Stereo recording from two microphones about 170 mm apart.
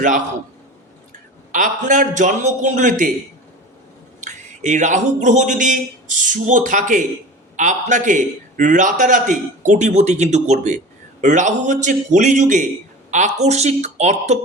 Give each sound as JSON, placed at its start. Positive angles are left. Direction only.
{"t": 1.5, "sound": "a man's voice", "side_deg": -50}
{"t": 4.2, "sound": "a man's voice", "side_deg": -45}
{"t": 13.1, "sound": "a sound", "side_deg": -45}
{"t": 13.4, "sound": "speech", "side_deg": -40}